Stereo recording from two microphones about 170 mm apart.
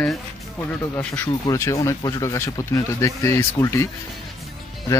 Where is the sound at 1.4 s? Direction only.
20° left (ahead or behind).